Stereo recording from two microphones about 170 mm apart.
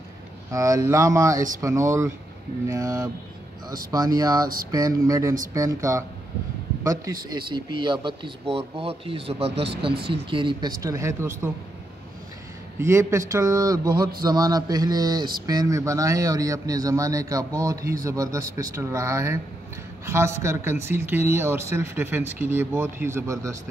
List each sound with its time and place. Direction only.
0.5 s a man's voice: 20° right (ahead or behind)
12.7 s a man's voice: 15° right (ahead or behind)